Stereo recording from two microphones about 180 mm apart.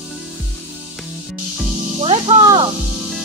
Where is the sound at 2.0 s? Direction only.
30° right (ahead or behind).